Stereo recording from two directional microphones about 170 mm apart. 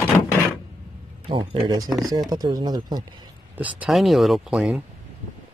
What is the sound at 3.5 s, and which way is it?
Speech, 10° right (ahead or behind).